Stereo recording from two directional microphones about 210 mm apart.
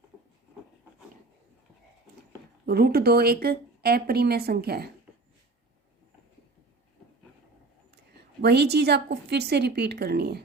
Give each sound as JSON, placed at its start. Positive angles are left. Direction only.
{"t": 2.6, "sound": "speech", "side_deg": -45}
{"t": 8.4, "sound": "speech", "side_deg": -50}